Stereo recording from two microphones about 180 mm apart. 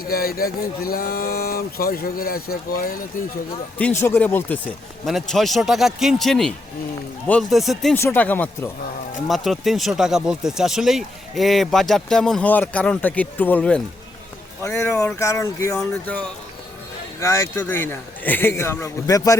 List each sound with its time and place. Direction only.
0.1 s speech: 55° left (ahead or behind)
3.8 s speech: 10° left (ahead or behind)
7.9 s a man's voice: 10° left (ahead or behind)
15.0 s a man's voice: 15° left (ahead or behind)
17.2 s a man's voice: 15° left (ahead or behind)